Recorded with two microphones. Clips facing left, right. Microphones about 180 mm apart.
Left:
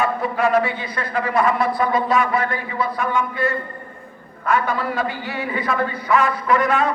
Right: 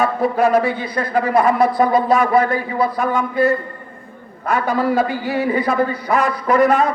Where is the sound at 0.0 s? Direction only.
40° right (ahead or behind).